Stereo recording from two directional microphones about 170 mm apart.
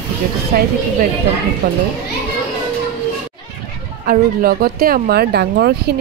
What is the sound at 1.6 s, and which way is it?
Speech, 65° right (ahead or behind).